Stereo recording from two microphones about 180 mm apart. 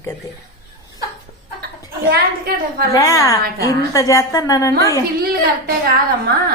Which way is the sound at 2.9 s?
20° left (ahead or behind).